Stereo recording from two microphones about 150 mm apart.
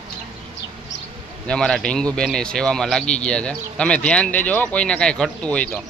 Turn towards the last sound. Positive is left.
turn(degrees=5)  # may be behind; listen again after turning